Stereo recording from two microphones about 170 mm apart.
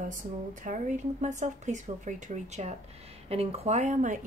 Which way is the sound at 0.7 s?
45° right (ahead or behind).